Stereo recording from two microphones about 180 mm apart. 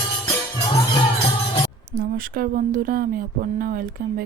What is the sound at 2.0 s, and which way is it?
Speech, 50° right (ahead or behind).